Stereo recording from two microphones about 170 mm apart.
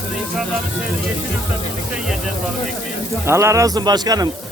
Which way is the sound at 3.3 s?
15° right (ahead or behind).